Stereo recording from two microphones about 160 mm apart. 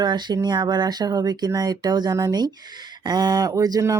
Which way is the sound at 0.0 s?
25° right (ahead or behind).